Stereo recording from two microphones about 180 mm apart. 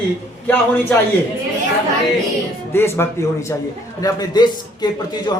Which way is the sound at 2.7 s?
15° left (ahead or behind).